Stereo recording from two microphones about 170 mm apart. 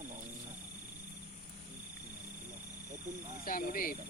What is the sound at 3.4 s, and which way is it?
Speech, 55° left (ahead or behind).